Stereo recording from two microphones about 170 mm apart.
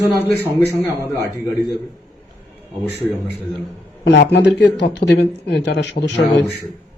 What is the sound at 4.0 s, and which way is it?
Speech, 90° left.